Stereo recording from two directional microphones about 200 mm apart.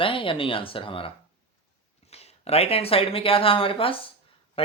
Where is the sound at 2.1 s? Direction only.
30° left (ahead or behind).